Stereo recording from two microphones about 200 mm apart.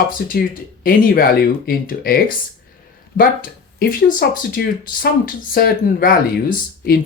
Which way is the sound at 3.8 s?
50° left (ahead or behind).